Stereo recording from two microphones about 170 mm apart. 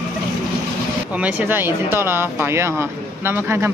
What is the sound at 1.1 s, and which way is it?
Speech, 10° right (ahead or behind).